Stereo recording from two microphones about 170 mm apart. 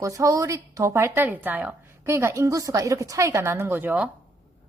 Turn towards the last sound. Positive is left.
turn(degrees=-10)  # may be behind; listen again after turning